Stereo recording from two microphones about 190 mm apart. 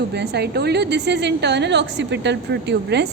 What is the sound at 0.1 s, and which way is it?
A woman's voice, 60° right (ahead or behind).